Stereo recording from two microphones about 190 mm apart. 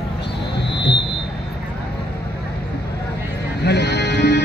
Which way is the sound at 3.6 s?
60° left (ahead or behind).